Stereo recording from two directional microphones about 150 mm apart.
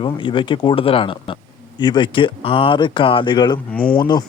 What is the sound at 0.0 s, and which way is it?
Speech, 30° left (ahead or behind).